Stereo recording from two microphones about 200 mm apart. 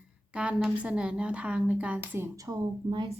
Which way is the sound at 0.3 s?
5° right (ahead or behind).